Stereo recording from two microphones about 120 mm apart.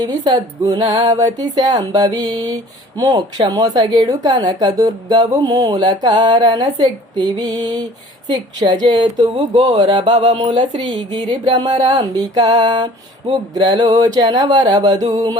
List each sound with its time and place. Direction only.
0.0 s a woman's voice: 35° right (ahead or behind)